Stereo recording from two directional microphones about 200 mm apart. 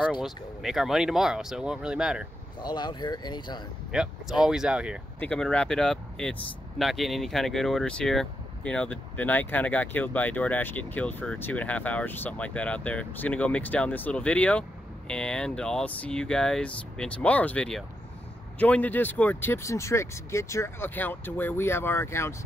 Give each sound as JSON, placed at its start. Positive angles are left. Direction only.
{"t": 0.0, "sound": "speech", "side_deg": 0}
{"t": 2.6, "sound": "speech", "side_deg": 20}
{"t": 3.9, "sound": "speech", "side_deg": -5}